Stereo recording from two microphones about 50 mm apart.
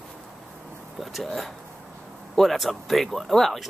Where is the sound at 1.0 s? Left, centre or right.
Centre.